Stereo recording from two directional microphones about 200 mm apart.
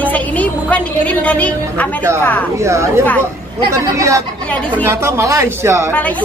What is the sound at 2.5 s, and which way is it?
Speech, 15° right (ahead or behind).